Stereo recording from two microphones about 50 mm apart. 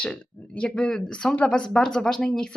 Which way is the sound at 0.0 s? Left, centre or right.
Left.